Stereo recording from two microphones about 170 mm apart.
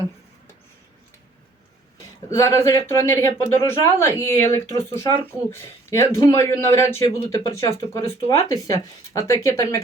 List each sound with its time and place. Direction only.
2.3 s speech: 20° left (ahead or behind)